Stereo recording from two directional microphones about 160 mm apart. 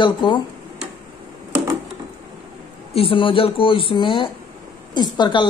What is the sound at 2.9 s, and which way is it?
Speech, 35° left (ahead or behind).